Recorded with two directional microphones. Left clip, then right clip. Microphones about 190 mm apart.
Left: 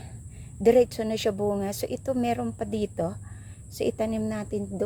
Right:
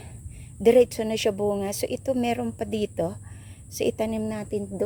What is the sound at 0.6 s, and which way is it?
Speech, 15° right (ahead or behind).